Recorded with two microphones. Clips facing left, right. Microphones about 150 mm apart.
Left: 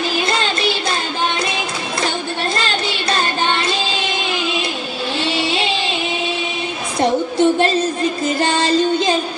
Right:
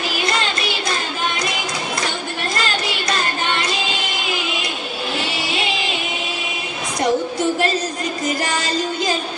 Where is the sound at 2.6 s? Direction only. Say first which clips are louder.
Left 2 dB; 30° left (ahead or behind).